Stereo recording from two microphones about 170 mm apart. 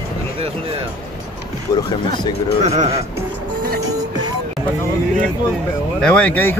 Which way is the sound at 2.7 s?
40° right (ahead or behind).